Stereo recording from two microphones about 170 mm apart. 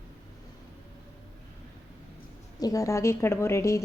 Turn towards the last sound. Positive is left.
turn(degrees=15)  # may be behind; listen again after turning